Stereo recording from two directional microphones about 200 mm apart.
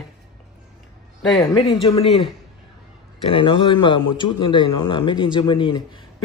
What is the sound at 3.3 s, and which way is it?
A man's voice, 25° left (ahead or behind).